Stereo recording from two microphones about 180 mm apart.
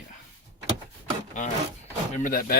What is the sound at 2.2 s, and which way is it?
Speech, 50° left (ahead or behind).